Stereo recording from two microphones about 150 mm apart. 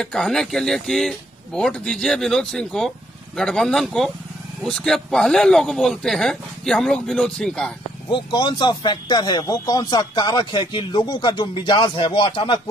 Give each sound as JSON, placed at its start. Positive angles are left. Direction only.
{"t": 0.0, "sound": "speech", "side_deg": 5}
{"t": 8.1, "sound": "speech", "side_deg": 35}